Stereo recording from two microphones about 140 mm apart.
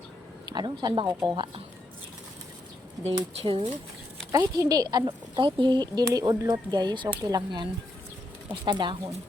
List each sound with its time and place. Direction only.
0.5 s speech: 30° right (ahead or behind)
3.3 s speech: 40° right (ahead or behind)
4.3 s speech: 20° right (ahead or behind)